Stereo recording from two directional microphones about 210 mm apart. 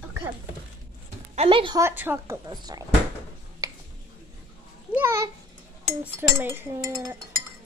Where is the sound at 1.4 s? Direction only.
25° right (ahead or behind).